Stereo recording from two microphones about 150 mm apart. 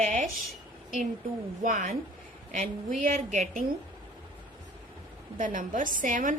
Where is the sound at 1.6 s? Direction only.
65° right (ahead or behind).